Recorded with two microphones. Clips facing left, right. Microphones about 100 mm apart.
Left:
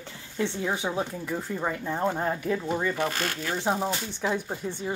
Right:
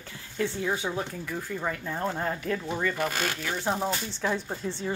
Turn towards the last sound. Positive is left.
turn(degrees=15)  # may be behind; listen again after turning